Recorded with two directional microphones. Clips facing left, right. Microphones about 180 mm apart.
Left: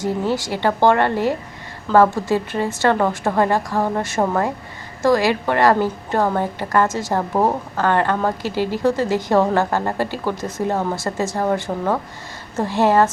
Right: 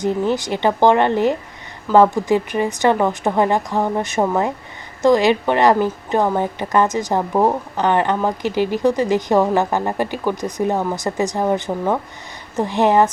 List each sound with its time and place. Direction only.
0.0 s a woman's voice: 20° right (ahead or behind)